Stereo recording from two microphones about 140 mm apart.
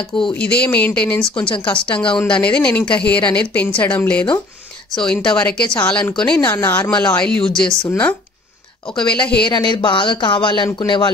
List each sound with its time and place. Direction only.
0.3 s speech: 10° left (ahead or behind)
1.4 s speech: 35° left (ahead or behind)
2.0 s speech: 5° left (ahead or behind)
8.9 s speech: 5° left (ahead or behind)
9.5 s speech: 30° left (ahead or behind)